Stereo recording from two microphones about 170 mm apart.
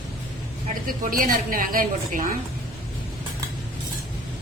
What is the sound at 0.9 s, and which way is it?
A woman's voice, 55° right (ahead or behind).